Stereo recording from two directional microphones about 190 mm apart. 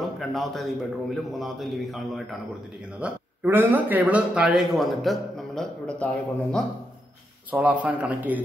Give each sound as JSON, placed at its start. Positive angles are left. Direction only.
{"t": 0.2, "sound": "a man's voice", "side_deg": 0}
{"t": 7.5, "sound": "a man's voice", "side_deg": -10}